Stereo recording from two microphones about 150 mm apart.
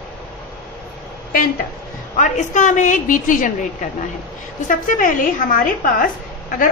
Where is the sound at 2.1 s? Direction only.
55° left (ahead or behind).